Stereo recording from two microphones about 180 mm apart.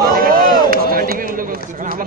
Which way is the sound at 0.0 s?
55° right (ahead or behind).